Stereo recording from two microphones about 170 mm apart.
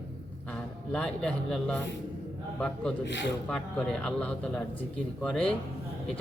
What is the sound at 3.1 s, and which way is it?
Speech, 90° left.